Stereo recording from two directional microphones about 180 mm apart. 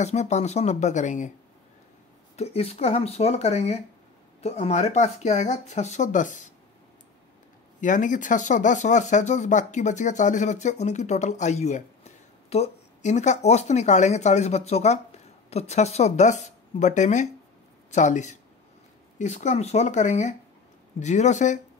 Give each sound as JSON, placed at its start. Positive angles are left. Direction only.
{"t": 0.0, "sound": "speech", "side_deg": 40}
{"t": 2.3, "sound": "speech", "side_deg": 35}
{"t": 7.8, "sound": "speech", "side_deg": 45}